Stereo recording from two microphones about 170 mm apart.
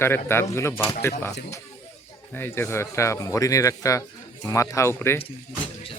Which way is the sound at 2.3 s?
15° left (ahead or behind).